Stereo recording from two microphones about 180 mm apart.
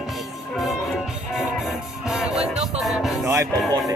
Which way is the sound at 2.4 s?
35° right (ahead or behind).